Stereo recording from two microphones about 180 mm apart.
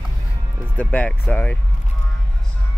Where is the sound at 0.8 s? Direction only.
10° left (ahead or behind).